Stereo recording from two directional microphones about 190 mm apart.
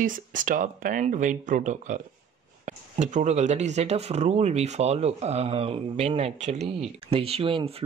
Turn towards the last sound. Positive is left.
turn(degrees=-30)  # may be behind; listen again after turning